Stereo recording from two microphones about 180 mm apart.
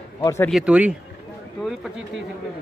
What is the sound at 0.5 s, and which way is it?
Speech, 5° right (ahead or behind).